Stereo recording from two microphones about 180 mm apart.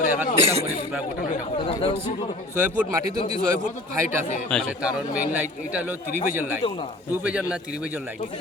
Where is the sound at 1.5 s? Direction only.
30° left (ahead or behind).